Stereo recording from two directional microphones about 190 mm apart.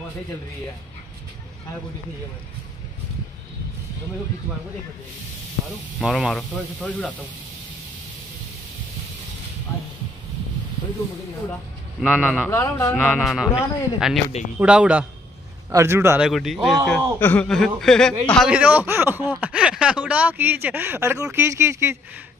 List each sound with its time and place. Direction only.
5.9 s a man's voice: centre (ahead or behind)
9.7 s speech: 15° left (ahead or behind)
12.0 s a man's voice: 5° left (ahead or behind)
12.4 s speech: 15° left (ahead or behind)
13.0 s a man's voice: centre (ahead or behind)
16.3 s a man's voice: centre (ahead or behind)
18.5 s speech: 5° right (ahead or behind)